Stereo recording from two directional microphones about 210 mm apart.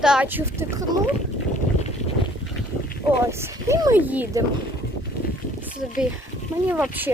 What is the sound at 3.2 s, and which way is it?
Speech, 10° right (ahead or behind).